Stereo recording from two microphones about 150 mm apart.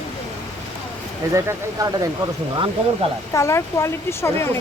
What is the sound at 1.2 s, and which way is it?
Speech, 20° right (ahead or behind).